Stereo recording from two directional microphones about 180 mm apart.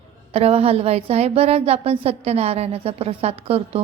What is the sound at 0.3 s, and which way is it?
A woman's voice, 35° right (ahead or behind).